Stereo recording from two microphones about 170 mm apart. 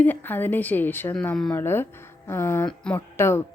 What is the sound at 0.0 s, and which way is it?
A woman's voice, 10° left (ahead or behind).